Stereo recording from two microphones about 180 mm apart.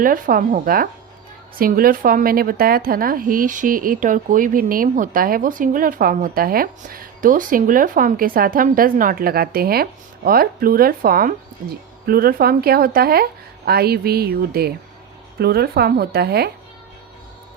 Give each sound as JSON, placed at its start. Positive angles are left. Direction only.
{"t": 0.0, "sound": "a woman's voice", "side_deg": -50}